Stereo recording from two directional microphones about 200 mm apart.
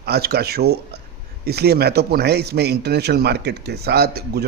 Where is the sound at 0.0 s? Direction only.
50° right (ahead or behind).